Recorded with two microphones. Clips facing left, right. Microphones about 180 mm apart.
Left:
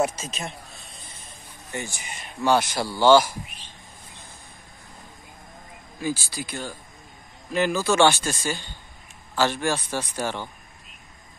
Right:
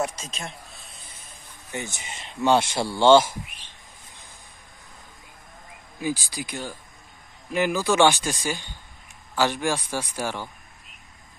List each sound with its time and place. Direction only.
0.0 s a man's voice: 5° left (ahead or behind)
1.7 s speech: 20° right (ahead or behind)
5.9 s a man's voice: 15° right (ahead or behind)